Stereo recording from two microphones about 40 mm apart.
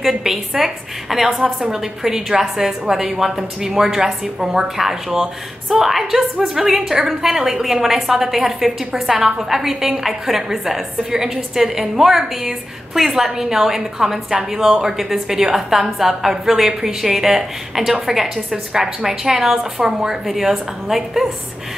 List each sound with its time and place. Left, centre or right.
0.0 s a woman's voice: centre
20.2 s a woman's voice: centre